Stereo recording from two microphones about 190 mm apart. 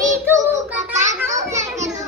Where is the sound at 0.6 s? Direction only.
40° right (ahead or behind).